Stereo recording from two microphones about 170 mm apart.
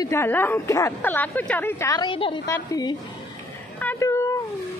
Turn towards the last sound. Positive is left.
turn(degrees=15)  # may be behind; listen again after turning